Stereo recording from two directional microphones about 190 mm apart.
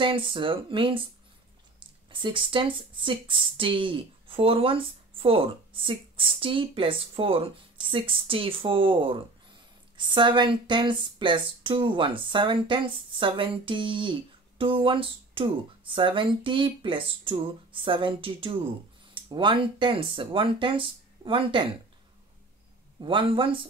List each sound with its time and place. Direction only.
0.0 s speech: 25° right (ahead or behind)
22.9 s speech: 25° right (ahead or behind)